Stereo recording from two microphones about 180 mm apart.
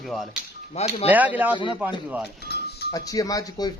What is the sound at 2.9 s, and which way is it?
Speech, 20° left (ahead or behind).